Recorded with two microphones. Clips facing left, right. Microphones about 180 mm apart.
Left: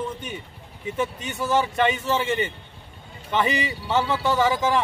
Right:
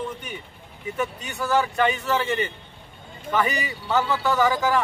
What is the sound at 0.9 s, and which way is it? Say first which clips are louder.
Speech: left 1 dB; 20° left (ahead or behind).